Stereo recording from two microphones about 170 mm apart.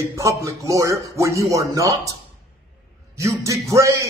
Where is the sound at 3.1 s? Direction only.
20° right (ahead or behind).